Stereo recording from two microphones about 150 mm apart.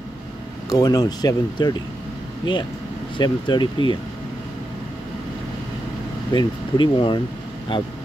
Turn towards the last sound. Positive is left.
turn(degrees=30)  # may be behind; listen again after turning